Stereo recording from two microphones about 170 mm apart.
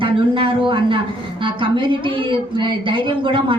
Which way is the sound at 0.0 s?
30° right (ahead or behind).